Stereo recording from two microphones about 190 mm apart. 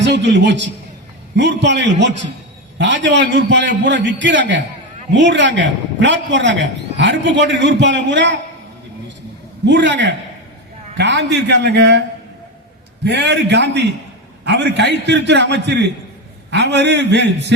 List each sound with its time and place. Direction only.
0.0 s a man's voice: 65° right (ahead or behind)
9.6 s a man's voice: 70° right (ahead or behind)
13.1 s a man's voice: 65° right (ahead or behind)